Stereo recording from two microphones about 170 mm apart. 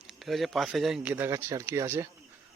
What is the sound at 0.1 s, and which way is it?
Speech, centre (ahead or behind).